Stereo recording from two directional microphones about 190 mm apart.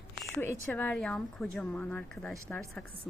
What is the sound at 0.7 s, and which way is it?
Speech, 5° left (ahead or behind).